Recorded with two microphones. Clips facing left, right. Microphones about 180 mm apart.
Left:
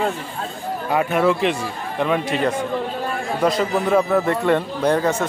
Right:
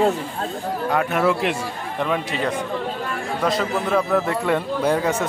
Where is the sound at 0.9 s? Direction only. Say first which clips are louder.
Left 2 dB; 5° left (ahead or behind).